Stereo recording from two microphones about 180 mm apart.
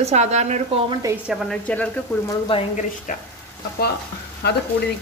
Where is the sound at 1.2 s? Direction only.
Centre (ahead or behind).